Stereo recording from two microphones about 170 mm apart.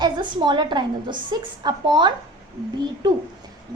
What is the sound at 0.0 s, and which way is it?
A woman's voice, 25° right (ahead or behind).